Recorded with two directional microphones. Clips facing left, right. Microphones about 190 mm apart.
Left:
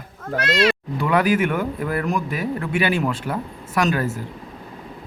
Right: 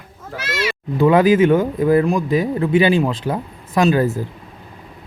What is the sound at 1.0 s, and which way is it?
Speech, 20° right (ahead or behind).